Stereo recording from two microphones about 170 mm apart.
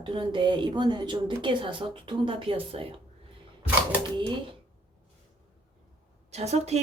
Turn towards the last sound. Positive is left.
turn(degrees=-40)  # may be behind; listen again after turning